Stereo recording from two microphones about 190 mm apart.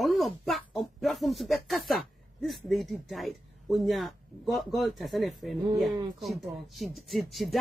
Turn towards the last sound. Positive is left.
turn(degrees=0)  # may be behind; listen again after turning